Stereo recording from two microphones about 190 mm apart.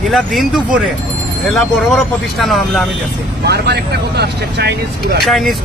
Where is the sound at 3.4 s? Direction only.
60° right (ahead or behind).